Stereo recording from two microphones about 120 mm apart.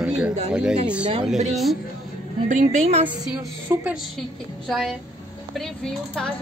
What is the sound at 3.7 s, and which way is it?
Speech, 20° right (ahead or behind).